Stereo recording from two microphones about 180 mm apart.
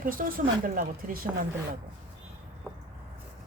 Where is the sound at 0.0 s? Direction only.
50° right (ahead or behind).